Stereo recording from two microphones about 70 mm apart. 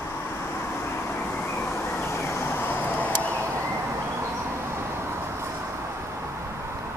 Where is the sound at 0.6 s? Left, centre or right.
Left.